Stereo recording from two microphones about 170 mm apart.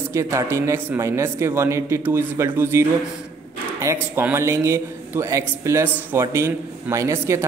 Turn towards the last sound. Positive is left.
turn(degrees=-15)  # may be behind; listen again after turning